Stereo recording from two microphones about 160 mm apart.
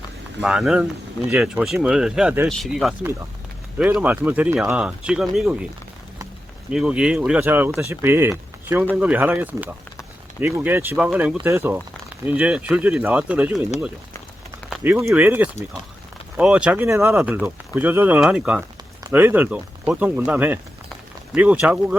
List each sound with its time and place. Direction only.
0.4 s speech: 5° right (ahead or behind)
2.5 s speech: centre (ahead or behind)
3.0 s speech: 15° right (ahead or behind)
3.8 s speech: 5° right (ahead or behind)
6.7 s speech: 5° right (ahead or behind)
11.4 s speech: 15° right (ahead or behind)
14.8 s speech: 15° right (ahead or behind)
16.8 s speech: 15° right (ahead or behind)